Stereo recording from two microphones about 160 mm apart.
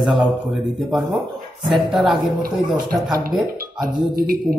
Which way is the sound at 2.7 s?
25° right (ahead or behind).